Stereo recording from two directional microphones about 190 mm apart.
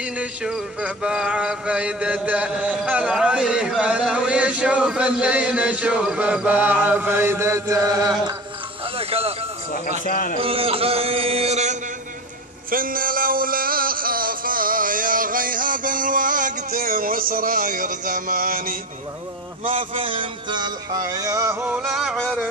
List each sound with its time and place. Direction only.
0.0 s mantra: 5° right (ahead or behind)
8.9 s a sound: 30° right (ahead or behind)
10.0 s speech: 45° left (ahead or behind)
10.4 s a sound: 30° right (ahead or behind)
12.7 s music: 50° right (ahead or behind)
20.0 s music: 30° right (ahead or behind); by 22.5 s centre (ahead or behind)